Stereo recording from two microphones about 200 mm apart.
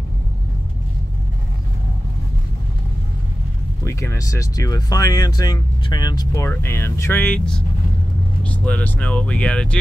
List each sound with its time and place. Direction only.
3.8 s speech: 15° left (ahead or behind)